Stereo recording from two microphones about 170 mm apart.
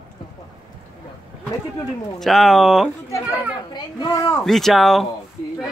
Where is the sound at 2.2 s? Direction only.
Centre (ahead or behind).